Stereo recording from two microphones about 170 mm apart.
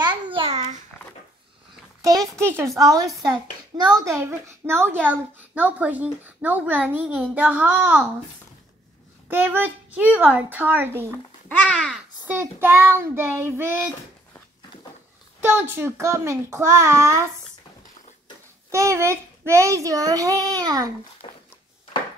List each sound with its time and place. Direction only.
0.0 s babbling: 30° right (ahead or behind)
2.0 s a child's voice: 20° right (ahead or behind)
9.3 s a child's voice: 10° right (ahead or behind)
11.4 s babbling: 5° left (ahead or behind)
12.3 s a child's voice: 15° right (ahead or behind)
15.4 s a child's voice: 10° right (ahead or behind)
18.7 s a child's voice: 15° right (ahead or behind)
21.2 s a sound: 30° left (ahead or behind)